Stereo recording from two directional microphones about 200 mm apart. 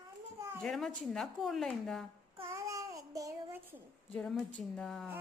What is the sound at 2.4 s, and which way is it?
Child singing, 15° right (ahead or behind).